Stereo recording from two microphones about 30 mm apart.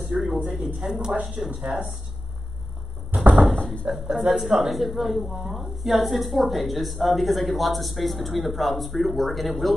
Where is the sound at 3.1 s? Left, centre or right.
Right.